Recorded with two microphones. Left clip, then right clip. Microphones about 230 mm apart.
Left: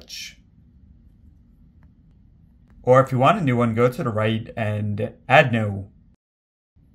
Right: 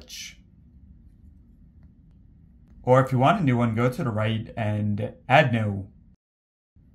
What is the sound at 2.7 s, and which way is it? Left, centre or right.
Speech, centre.